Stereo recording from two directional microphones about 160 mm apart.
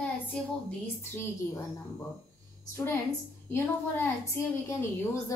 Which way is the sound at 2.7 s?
15° left (ahead or behind).